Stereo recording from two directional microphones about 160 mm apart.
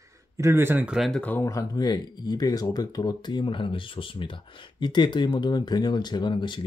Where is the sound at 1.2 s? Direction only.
15° left (ahead or behind).